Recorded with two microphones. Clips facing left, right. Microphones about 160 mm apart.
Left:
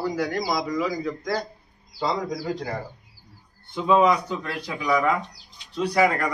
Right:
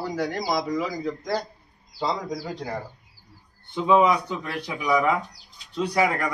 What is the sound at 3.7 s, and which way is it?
Speech, 10° right (ahead or behind).